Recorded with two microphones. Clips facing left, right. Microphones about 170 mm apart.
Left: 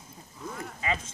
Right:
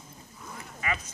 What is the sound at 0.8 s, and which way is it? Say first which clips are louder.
Speech: left 1 dB; 25° left (ahead or behind).